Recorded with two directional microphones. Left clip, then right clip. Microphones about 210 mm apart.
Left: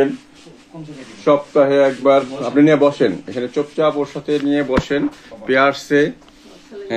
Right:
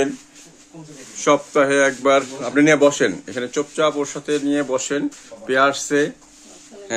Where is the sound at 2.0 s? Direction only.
10° right (ahead or behind).